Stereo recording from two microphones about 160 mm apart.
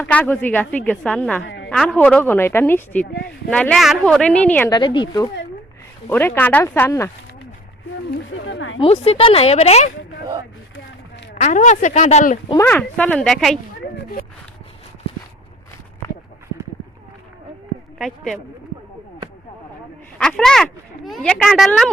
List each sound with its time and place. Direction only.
0.0 s a woman's voice: 10° left (ahead or behind)
4.7 s speech: 30° left (ahead or behind)
6.1 s a woman's voice: 15° left (ahead or behind)
8.8 s speech: 35° left (ahead or behind)
11.3 s speech: 50° left (ahead or behind)
12.5 s a woman's voice: 10° left (ahead or behind)
13.9 s speech: 70° left (ahead or behind)
17.9 s speech: centre (ahead or behind)
20.1 s speech: 5° left (ahead or behind)